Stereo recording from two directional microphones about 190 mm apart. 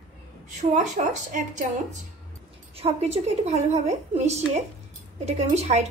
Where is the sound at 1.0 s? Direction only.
40° right (ahead or behind).